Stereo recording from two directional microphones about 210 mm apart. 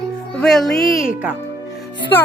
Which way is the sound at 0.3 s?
Centre (ahead or behind).